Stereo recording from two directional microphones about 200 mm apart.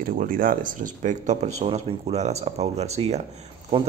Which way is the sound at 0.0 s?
45° right (ahead or behind).